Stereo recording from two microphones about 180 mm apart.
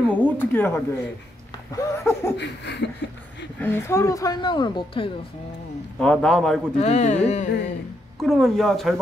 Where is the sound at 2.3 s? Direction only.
75° left (ahead or behind).